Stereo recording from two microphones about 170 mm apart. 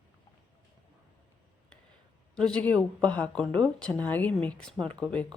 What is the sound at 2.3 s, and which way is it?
Speech, 5° left (ahead or behind).